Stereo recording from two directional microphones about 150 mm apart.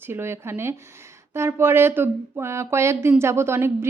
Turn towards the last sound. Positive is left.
turn(degrees=-15)  # may be behind; listen again after turning